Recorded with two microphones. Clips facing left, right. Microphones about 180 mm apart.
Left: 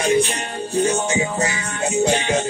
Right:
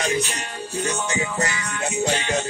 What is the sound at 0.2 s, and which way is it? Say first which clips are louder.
Music: left 6 dB; 35° left (ahead or behind).